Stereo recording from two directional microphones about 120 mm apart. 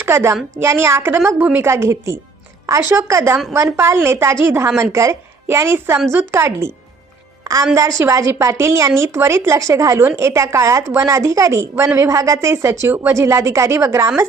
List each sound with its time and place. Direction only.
0.0 s a child's voice: 20° right (ahead or behind)